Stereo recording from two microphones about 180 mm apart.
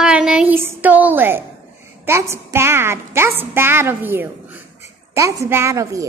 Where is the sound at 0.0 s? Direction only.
5° right (ahead or behind).